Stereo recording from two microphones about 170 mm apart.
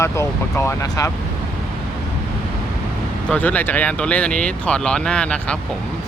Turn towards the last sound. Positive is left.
turn(degrees=5)  # may be behind; listen again after turning